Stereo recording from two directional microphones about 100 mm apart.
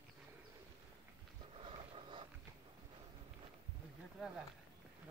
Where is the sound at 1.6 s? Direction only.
55° right (ahead or behind).